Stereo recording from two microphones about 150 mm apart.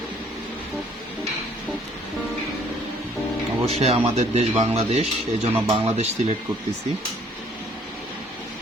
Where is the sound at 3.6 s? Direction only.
45° right (ahead or behind).